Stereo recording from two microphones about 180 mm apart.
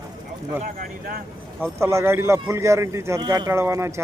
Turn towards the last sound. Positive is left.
turn(degrees=-15)  # may be behind; listen again after turning